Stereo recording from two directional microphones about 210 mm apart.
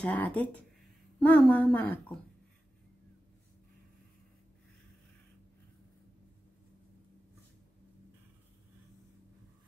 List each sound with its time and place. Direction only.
0.0 s speech: 5° left (ahead or behind)